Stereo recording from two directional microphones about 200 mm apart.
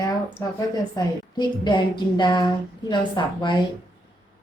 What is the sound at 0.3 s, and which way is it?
A woman's voice, 20° left (ahead or behind).